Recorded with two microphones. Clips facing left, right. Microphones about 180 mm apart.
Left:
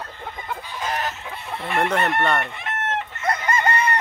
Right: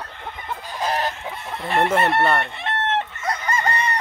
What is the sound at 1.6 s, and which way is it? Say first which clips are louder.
Speech: right 2 dB; 30° right (ahead or behind).